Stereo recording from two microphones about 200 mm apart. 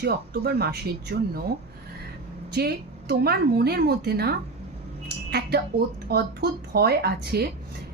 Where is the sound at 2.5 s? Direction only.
50° right (ahead or behind).